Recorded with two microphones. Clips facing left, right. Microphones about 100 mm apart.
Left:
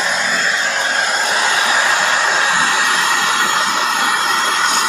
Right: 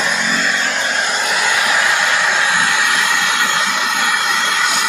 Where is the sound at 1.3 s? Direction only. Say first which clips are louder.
Even; 30° left (ahead or behind).